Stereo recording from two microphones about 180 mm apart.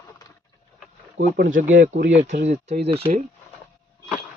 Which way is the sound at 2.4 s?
40° right (ahead or behind).